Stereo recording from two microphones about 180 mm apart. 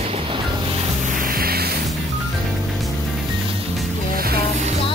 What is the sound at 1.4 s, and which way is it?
Music, 60° right (ahead or behind).